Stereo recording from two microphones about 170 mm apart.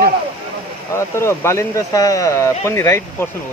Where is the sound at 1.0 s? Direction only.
15° left (ahead or behind).